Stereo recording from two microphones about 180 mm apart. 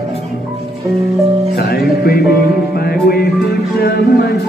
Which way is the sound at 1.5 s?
60° left (ahead or behind).